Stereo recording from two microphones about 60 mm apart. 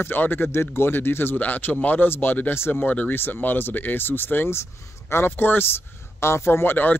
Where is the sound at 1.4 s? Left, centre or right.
Left.